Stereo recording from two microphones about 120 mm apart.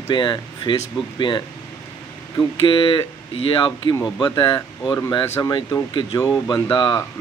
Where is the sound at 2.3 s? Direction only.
45° left (ahead or behind).